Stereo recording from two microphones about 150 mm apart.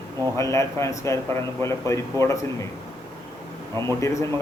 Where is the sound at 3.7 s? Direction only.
20° left (ahead or behind).